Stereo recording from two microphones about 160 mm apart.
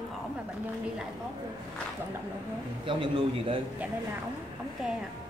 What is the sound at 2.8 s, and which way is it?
Speech, 30° right (ahead or behind).